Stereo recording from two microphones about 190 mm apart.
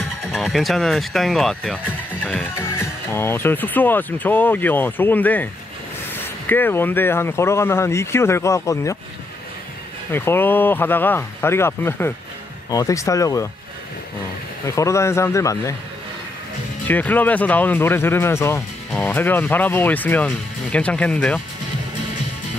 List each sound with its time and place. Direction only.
0.3 s speech: centre (ahead or behind)
2.8 s speech: 10° left (ahead or behind)
10.1 s speech: 10° left (ahead or behind)
14.8 s speech: 15° left (ahead or behind)
16.8 s speech: 10° left (ahead or behind)